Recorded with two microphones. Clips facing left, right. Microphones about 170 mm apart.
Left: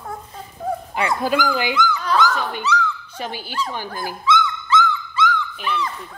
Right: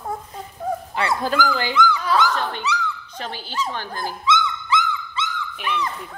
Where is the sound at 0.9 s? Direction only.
15° left (ahead or behind).